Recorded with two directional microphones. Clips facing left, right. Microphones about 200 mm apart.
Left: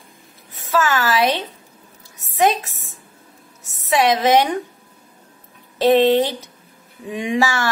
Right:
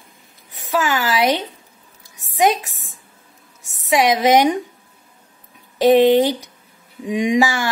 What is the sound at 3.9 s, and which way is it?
Speech, 15° right (ahead or behind).